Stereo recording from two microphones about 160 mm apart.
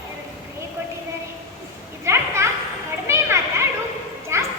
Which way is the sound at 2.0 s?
15° right (ahead or behind).